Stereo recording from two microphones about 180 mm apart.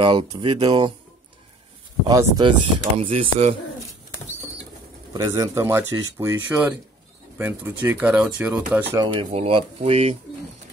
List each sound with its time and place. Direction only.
0.0 s speech: 25° right (ahead or behind)
2.0 s speech: 20° right (ahead or behind)
5.1 s speech: 20° right (ahead or behind)
8.9 s speech: 25° right (ahead or behind)